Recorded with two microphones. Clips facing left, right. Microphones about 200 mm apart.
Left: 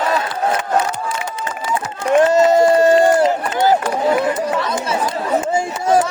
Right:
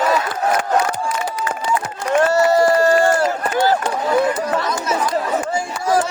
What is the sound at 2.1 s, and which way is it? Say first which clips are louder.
Run: left 3 dB; 20° left (ahead or behind).